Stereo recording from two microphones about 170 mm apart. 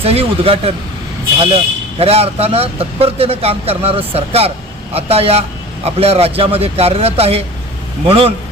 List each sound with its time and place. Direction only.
0.0 s speech: 35° right (ahead or behind)
2.0 s speech: 35° right (ahead or behind)